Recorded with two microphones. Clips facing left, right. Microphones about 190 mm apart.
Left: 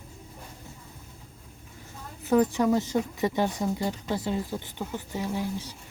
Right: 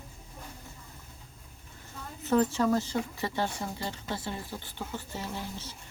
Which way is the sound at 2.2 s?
15° left (ahead or behind).